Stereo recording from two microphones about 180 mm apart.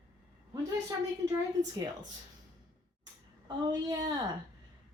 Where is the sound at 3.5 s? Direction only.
20° right (ahead or behind).